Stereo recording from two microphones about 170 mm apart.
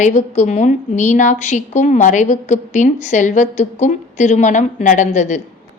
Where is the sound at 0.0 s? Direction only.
45° left (ahead or behind).